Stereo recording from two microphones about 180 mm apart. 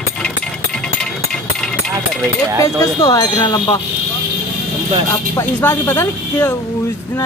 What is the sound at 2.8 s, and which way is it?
Speech, 15° left (ahead or behind).